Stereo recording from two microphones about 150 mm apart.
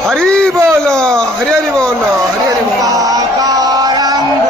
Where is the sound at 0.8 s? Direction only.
5° left (ahead or behind).